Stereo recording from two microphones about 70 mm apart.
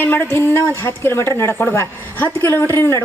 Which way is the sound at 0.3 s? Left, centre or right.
Left.